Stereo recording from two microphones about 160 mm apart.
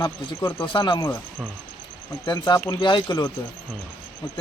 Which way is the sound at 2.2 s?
25° left (ahead or behind).